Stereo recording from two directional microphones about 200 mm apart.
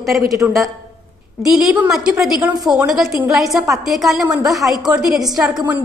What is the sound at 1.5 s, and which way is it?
A woman's voice, centre (ahead or behind).